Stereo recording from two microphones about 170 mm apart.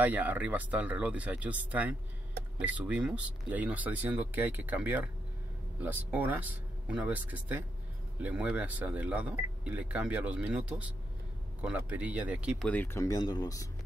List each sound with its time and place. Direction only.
0.0 s speech: 10° right (ahead or behind)
12.6 s speech: 10° left (ahead or behind)